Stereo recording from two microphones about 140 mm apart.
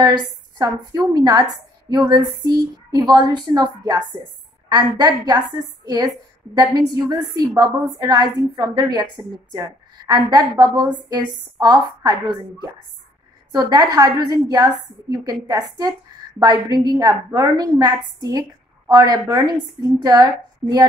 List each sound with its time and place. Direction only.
0.6 s a woman's voice: 30° right (ahead or behind)
10.0 s a woman's voice: 30° right (ahead or behind)